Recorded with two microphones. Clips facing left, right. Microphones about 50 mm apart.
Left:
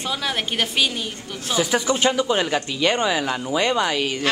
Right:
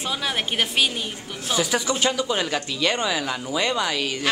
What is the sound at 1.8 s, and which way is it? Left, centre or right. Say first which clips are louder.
Speech: left 3 dB; left.